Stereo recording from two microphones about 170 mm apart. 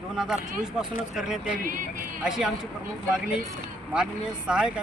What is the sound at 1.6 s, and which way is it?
Speech, 55° right (ahead or behind).